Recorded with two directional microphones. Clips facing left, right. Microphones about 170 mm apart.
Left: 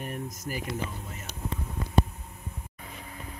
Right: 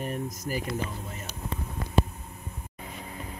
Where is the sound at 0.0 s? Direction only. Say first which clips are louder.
Right 3 dB; 35° right (ahead or behind).